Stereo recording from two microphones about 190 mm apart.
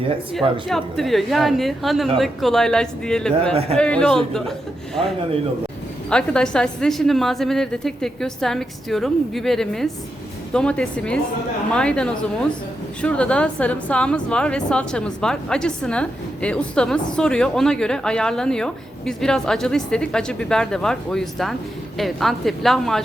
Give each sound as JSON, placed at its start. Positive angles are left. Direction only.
{"t": 0.7, "sound": "a woman's voice", "side_deg": 0}
{"t": 6.1, "sound": "a woman's voice", "side_deg": 5}